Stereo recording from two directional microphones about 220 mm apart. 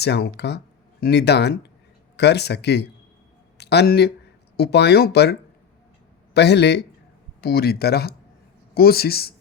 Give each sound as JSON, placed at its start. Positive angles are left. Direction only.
{"t": 0.0, "sound": "speech", "side_deg": 50}